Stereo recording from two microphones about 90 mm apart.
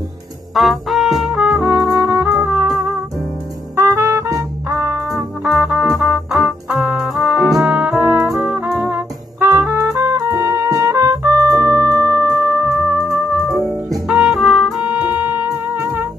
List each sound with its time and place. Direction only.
0.6 s trumpet: centre (ahead or behind)
2.4 s music: 20° right (ahead or behind)
3.7 s music: 30° right (ahead or behind)
5.4 s music: 10° right (ahead or behind)
8.0 s trumpet: 15° right (ahead or behind)
8.3 s brass instrument: centre (ahead or behind)
8.5 s music: 15° right (ahead or behind)
9.4 s music: 30° right (ahead or behind)
14.0 s music: 5° right (ahead or behind); by 16.1 s 25° right (ahead or behind)